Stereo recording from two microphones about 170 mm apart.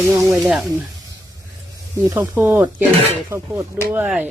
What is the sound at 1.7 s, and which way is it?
Speech, 20° right (ahead or behind).